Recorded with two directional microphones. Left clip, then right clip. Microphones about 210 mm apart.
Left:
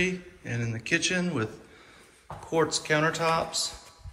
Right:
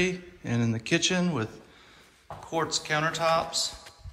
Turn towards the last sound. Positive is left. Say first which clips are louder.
# right 1 dB
turn(degrees=-5)  # may be behind; listen again after turning